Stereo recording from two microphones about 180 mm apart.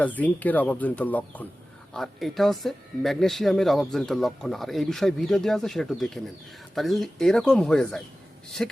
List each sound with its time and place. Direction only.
0.0 s speech: 10° left (ahead or behind)